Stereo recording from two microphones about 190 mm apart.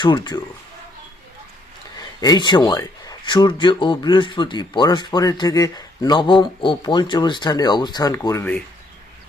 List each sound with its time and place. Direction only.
0.0 s speech: 25° left (ahead or behind)
2.2 s speech: 20° left (ahead or behind)